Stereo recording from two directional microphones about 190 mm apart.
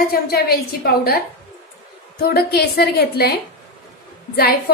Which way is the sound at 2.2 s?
55° left (ahead or behind).